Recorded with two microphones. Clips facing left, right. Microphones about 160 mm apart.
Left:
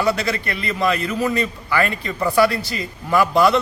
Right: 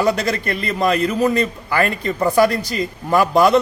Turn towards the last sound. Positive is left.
turn(degrees=-45)  # may be behind; listen again after turning